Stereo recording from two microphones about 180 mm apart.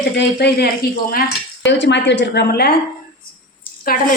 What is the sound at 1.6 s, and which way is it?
A woman's voice, 80° left.